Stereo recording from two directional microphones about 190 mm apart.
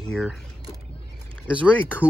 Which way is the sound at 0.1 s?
Centre (ahead or behind).